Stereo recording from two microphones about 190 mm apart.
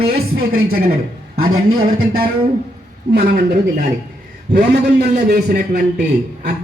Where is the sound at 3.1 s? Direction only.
60° right (ahead or behind).